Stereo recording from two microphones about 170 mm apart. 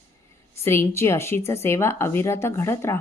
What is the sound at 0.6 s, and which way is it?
A woman's voice, 15° left (ahead or behind).